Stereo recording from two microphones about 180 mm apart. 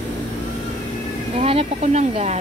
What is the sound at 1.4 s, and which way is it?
Snake, 35° right (ahead or behind).